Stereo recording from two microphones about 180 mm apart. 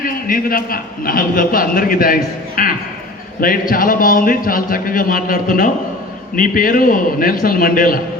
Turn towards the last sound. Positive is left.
turn(degrees=50)  # may be behind; listen again after turning